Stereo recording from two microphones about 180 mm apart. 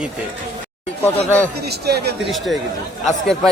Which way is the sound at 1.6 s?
65° right (ahead or behind).